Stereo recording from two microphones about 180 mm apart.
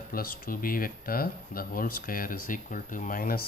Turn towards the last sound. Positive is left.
turn(degrees=55)  # may be behind; listen again after turning